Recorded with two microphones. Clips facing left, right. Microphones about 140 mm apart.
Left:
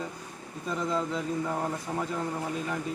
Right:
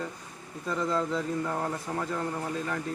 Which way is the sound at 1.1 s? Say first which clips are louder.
Even; 5° left (ahead or behind).